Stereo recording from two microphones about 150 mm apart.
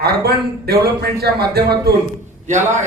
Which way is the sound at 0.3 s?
90° right.